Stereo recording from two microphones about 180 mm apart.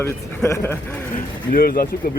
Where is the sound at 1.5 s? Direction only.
50° left (ahead or behind).